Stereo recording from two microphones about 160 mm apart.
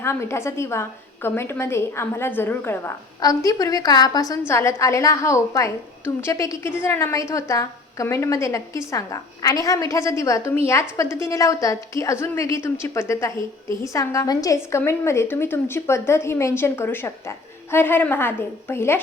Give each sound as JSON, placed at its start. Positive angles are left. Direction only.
{"t": 0.0, "sound": "a woman's voice", "side_deg": 15}